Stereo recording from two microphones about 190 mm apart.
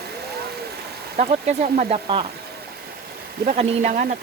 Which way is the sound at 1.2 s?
40° right (ahead or behind).